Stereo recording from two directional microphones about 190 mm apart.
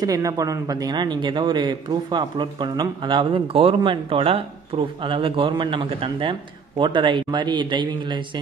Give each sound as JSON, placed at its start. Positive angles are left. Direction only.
{"t": 0.0, "sound": "speech", "side_deg": -20}